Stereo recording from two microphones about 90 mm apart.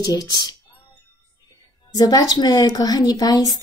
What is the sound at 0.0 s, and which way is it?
Speech, 45° left (ahead or behind).